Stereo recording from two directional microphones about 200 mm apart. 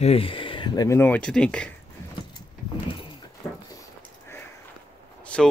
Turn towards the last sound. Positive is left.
turn(degrees=5)  # may be behind; listen again after turning